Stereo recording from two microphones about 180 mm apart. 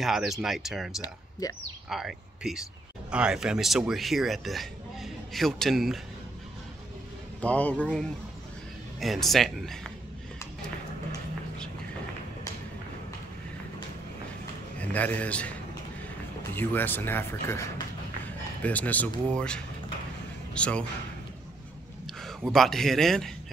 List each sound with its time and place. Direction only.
0.0 s speech: centre (ahead or behind)
1.4 s speech: 20° left (ahead or behind)
1.9 s speech: 5° right (ahead or behind)
7.4 s speech: 10° left (ahead or behind)
14.8 s speech: 10° left (ahead or behind)
16.5 s speech: 10° left (ahead or behind)
22.0 s speech: centre (ahead or behind)